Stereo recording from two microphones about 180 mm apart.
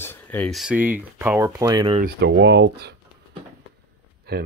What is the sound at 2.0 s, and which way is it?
Speech, 70° right (ahead or behind).